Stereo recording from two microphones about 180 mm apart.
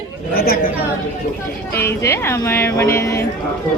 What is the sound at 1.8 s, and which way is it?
Speech, 15° left (ahead or behind).